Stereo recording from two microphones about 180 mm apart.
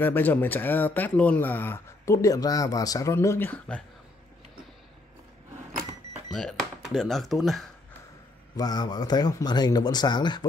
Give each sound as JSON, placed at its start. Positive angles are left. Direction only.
{"t": 0.0, "sound": "speech", "side_deg": 10}
{"t": 6.3, "sound": "speech", "side_deg": 0}
{"t": 8.5, "sound": "speech", "side_deg": 20}